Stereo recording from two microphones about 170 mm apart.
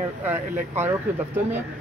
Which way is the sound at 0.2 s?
10° right (ahead or behind).